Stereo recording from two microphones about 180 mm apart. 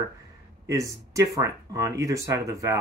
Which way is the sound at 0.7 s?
20° right (ahead or behind).